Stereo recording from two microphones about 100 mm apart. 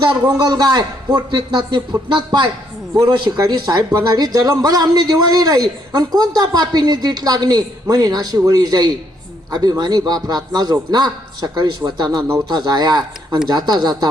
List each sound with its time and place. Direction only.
0.0 s a woman's voice: 45° right (ahead or behind)